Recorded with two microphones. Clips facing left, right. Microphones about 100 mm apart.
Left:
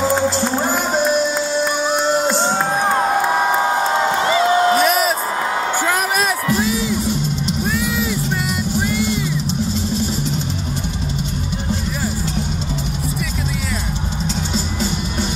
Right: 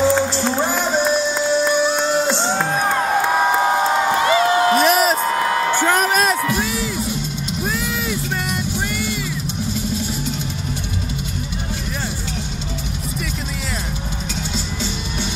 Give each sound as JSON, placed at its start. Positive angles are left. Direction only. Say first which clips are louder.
{"t": 4.8, "sound": "a sound", "louder": "right 1 dB", "side_deg": 0}
{"t": 5.8, "sound": "music", "louder": "right 2 dB", "side_deg": 5}
{"t": 6.6, "sound": "music", "louder": "left 4 dB", "side_deg": 20}
{"t": 7.6, "sound": "vehicle", "louder": "left 2 dB", "side_deg": 5}